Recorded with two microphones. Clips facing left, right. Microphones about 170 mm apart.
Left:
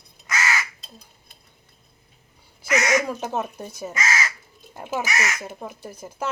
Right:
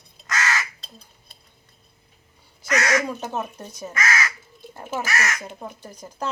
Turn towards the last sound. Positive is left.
turn(degrees=5)  # may be behind; listen again after turning